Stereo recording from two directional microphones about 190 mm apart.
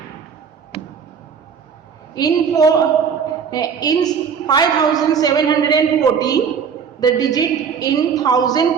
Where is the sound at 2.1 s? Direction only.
20° left (ahead or behind).